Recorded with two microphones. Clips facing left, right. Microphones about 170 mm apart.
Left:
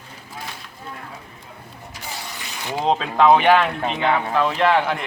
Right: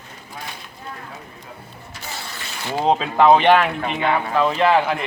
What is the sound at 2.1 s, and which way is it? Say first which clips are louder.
Mechanisms: right 1 dB; 15° left (ahead or behind).